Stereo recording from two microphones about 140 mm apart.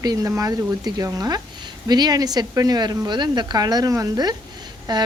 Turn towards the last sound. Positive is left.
turn(degrees=-30)  # may be behind; listen again after turning